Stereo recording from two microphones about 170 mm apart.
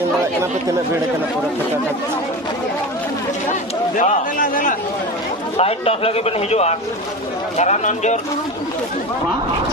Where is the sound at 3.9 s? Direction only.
45° left (ahead or behind).